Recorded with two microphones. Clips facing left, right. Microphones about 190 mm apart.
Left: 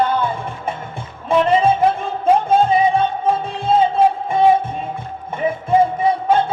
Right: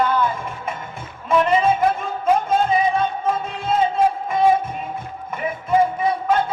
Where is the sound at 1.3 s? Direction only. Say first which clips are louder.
Left 3 dB; 30° left (ahead or behind).